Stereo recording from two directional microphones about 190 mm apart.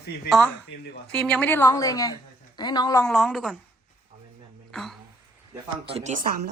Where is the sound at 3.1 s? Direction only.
Centre (ahead or behind).